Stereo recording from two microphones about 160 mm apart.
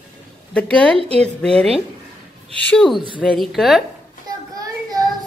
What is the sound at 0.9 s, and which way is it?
Speech, 35° right (ahead or behind).